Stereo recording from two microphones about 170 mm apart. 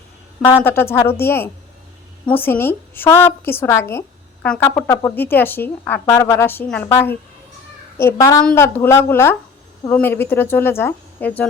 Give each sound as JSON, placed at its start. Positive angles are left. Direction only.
{"t": 0.4, "sound": "a woman's voice", "side_deg": 15}